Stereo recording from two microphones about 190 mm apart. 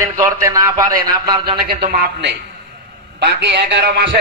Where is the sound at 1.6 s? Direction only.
50° right (ahead or behind).